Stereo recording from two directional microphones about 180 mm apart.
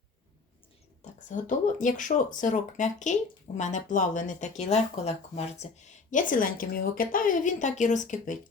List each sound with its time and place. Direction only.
1.3 s speech: 45° left (ahead or behind)